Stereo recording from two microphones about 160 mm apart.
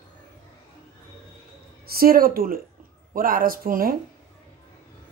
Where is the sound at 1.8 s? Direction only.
65° right (ahead or behind).